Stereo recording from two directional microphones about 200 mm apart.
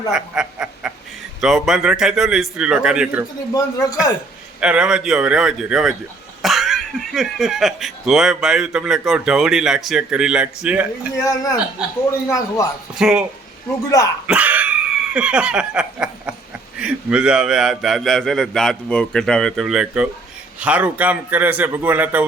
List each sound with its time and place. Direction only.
0.1 s a sound: 5° right (ahead or behind)
1.4 s speech: centre (ahead or behind)
3.5 s speech: 20° left (ahead or behind)
4.6 s speech: 5° right (ahead or behind)
11.2 s a man's voice: 15° left (ahead or behind)
13.0 s speech: 5° right (ahead or behind)
13.9 s a man's voice: 15° left (ahead or behind)
14.3 s a sound: 5° right (ahead or behind)
16.8 s a man's voice: 5° right (ahead or behind)